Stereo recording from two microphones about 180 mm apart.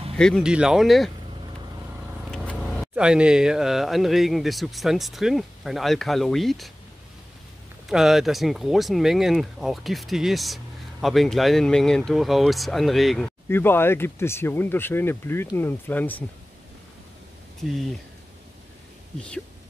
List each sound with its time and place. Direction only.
0.1 s speech: centre (ahead or behind)
2.3 s speech: 5° left (ahead or behind)
7.9 s speech: centre (ahead or behind)
13.5 s speech: 10° left (ahead or behind)